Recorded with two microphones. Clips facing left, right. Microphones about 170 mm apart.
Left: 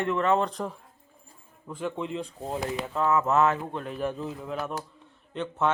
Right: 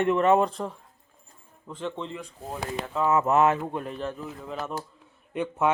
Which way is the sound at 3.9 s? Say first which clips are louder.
Left 2 dB; 10° left (ahead or behind).